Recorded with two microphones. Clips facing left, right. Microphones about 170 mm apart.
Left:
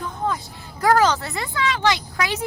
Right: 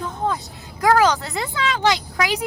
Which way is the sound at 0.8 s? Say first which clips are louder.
Right 1 dB; 10° right (ahead or behind).